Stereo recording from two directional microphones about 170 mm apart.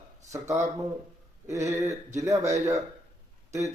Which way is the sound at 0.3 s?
20° right (ahead or behind).